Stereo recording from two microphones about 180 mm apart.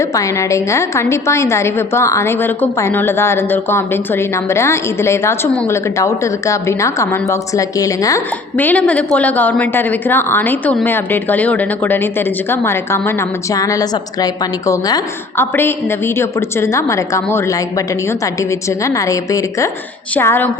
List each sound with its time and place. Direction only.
0.0 s a woman's voice: 15° left (ahead or behind)